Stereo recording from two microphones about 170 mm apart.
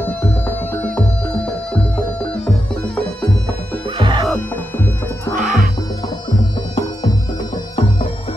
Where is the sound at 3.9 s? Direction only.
25° right (ahead or behind).